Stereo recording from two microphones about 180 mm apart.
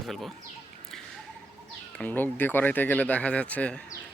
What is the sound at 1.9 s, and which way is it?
Speech, 10° left (ahead or behind).